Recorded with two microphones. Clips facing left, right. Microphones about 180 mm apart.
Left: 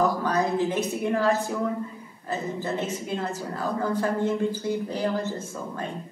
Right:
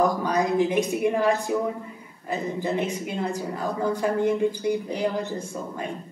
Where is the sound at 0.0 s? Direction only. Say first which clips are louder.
Right 1 dB; 15° right (ahead or behind).